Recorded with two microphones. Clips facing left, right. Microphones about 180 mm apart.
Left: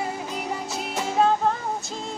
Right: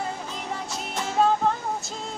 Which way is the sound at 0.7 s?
5° left (ahead or behind).